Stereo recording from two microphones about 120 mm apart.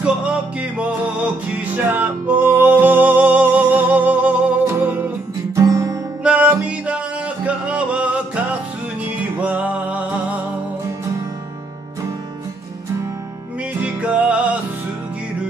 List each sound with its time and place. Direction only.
0.0 s music: 10° right (ahead or behind)
5.6 s music: 25° right (ahead or behind)
6.2 s music: 15° right (ahead or behind)
9.4 s music: 10° right (ahead or behind)
13.7 s music: 10° right (ahead or behind)